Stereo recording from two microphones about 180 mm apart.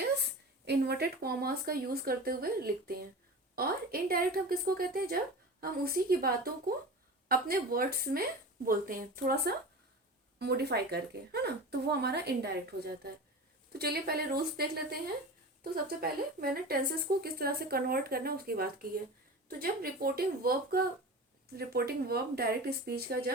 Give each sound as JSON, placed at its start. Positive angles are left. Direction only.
{"t": 0.2, "sound": "a woman's voice", "side_deg": -65}